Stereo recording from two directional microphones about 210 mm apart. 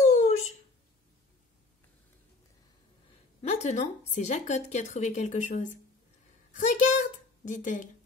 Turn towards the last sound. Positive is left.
turn(degrees=35)  # may be behind; listen again after turning